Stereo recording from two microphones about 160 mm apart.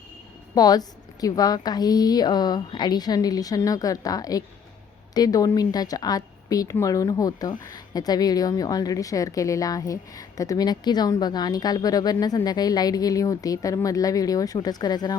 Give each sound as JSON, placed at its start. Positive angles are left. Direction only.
{"t": 0.5, "sound": "a woman's voice", "side_deg": 25}